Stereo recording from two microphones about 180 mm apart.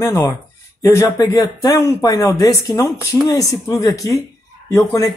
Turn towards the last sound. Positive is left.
turn(degrees=20)  # may be behind; listen again after turning